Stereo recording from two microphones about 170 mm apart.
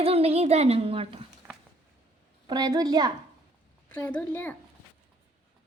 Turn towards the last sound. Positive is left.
turn(degrees=10)  # may be behind; listen again after turning